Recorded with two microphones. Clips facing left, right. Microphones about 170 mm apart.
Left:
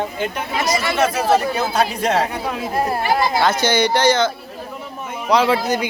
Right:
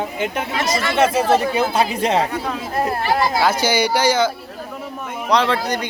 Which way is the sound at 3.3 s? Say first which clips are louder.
Left 1 dB; 10° right (ahead or behind).